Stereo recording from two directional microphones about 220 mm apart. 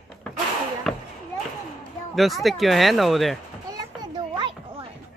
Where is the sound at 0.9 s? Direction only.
Centre (ahead or behind).